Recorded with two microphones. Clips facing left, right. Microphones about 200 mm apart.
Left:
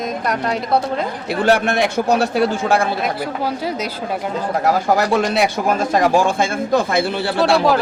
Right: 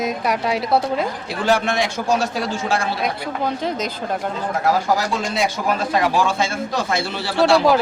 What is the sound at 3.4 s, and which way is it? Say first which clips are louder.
Speech: right 2 dB; 10° left (ahead or behind).